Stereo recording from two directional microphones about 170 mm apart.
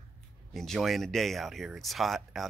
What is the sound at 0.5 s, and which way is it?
Speech, centre (ahead or behind).